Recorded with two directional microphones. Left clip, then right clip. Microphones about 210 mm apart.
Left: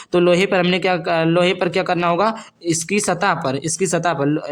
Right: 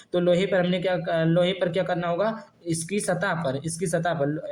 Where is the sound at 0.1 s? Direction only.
40° left (ahead or behind).